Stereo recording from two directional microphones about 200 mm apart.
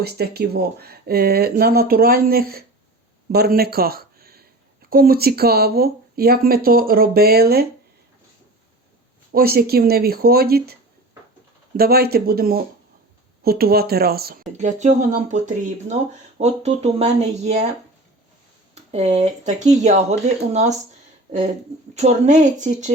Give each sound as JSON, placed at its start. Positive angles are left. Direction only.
{"t": 0.0, "sound": "speech", "side_deg": -55}
{"t": 9.3, "sound": "speech", "side_deg": -50}
{"t": 11.8, "sound": "speech", "side_deg": -50}
{"t": 14.6, "sound": "speech", "side_deg": -35}
{"t": 18.7, "sound": "speech", "side_deg": -35}
{"t": 21.9, "sound": "speech", "side_deg": -35}